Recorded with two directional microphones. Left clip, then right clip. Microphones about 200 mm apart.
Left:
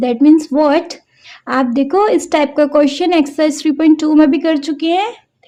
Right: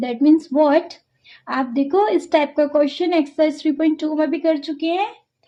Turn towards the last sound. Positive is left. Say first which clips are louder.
# left 6 dB
turn(degrees=45)  # may be behind; listen again after turning